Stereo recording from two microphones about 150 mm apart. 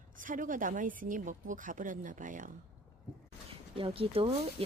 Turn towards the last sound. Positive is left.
turn(degrees=-40)  # may be behind; listen again after turning